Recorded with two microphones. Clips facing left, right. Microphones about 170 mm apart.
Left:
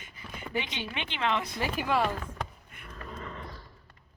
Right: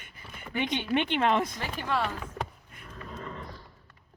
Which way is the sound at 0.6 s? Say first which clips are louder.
Right 8 dB; 50° right (ahead or behind).